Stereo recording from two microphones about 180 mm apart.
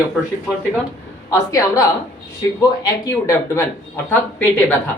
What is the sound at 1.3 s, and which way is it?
Speech, 20° left (ahead or behind).